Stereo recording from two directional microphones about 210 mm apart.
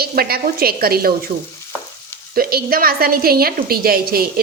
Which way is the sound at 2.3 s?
45° right (ahead or behind).